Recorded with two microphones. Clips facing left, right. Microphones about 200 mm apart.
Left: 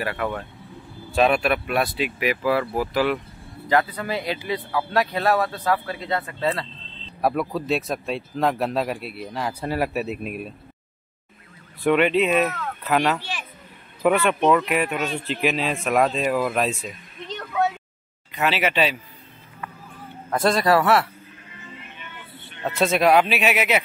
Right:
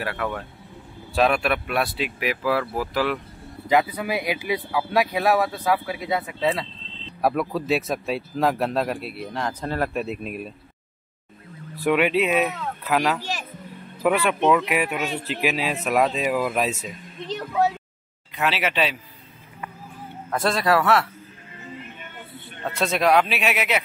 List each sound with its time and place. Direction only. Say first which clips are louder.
0.0 s speech: left 1 dB; centre (ahead or behind)
3.6 s speech: right 1 dB; 10° right (ahead or behind)
7.2 s speech: even; centre (ahead or behind)
11.8 s speech: left 2 dB; 5° right (ahead or behind)
13.2 s a sound: right 3 dB; 40° right (ahead or behind)
14.0 s speech: left 1 dB; 5° right (ahead or behind)
17.5 s speech: right 1 dB; 30° right (ahead or behind)
18.3 s speech: left 2 dB; centre (ahead or behind)
20.2 s speech: left 2 dB; centre (ahead or behind)
21.8 s music: right 2 dB; 45° right (ahead or behind)
22.6 s speech: left 3 dB; centre (ahead or behind)